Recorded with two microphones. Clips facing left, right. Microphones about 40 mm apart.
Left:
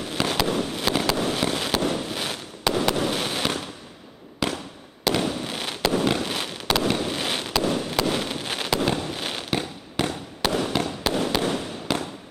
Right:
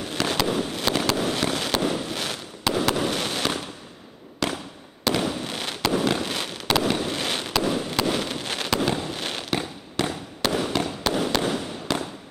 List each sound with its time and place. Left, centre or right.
0.2 s fireworks: centre
4.4 s fireworks: centre
5.0 s fireworks: centre
10.0 s fireworks: centre
10.4 s fireworks: centre